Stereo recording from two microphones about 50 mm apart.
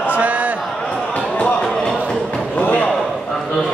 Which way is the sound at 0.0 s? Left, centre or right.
Right.